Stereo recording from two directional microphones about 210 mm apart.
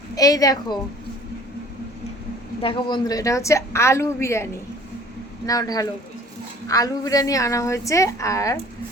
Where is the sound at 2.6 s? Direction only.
25° left (ahead or behind).